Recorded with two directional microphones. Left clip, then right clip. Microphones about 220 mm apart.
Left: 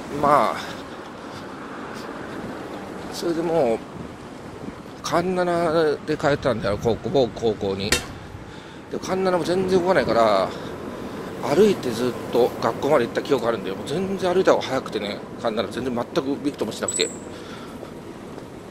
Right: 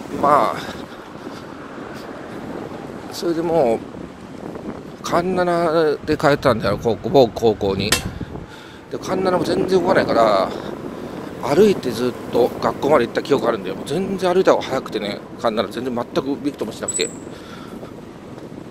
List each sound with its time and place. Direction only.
0.2 s speech: 10° right (ahead or behind)
3.2 s speech: 20° right (ahead or behind)
5.0 s speech: 15° right (ahead or behind)
7.1 s speech: 25° right (ahead or behind)
9.0 s speech: 15° right (ahead or behind)
15.8 s speech: 10° right (ahead or behind)